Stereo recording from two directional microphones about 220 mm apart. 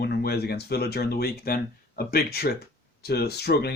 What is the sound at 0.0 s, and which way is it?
Speech, 45° left (ahead or behind).